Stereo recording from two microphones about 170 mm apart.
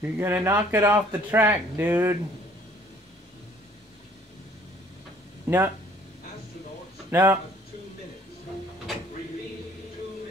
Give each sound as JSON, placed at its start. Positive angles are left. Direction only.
{"t": 0.0, "sound": "a man's voice", "side_deg": -15}
{"t": 5.5, "sound": "a man's voice", "side_deg": -20}
{"t": 7.1, "sound": "speech", "side_deg": -15}